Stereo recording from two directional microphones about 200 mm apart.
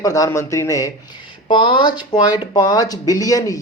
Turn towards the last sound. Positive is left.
turn(degrees=15)  # may be behind; listen again after turning